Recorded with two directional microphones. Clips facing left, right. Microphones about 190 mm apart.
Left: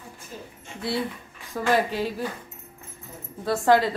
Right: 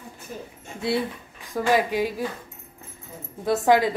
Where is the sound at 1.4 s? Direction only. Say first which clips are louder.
Right 1 dB; 15° right (ahead or behind).